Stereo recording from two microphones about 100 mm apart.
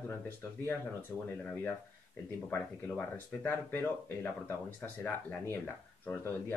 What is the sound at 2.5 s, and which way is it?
Speech, 20° left (ahead or behind).